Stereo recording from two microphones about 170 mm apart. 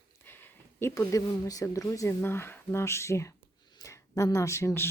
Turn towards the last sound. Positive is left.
turn(degrees=15)  # may be behind; listen again after turning